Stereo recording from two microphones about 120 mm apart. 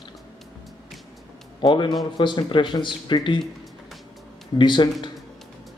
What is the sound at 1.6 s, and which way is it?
Speech, 40° left (ahead or behind).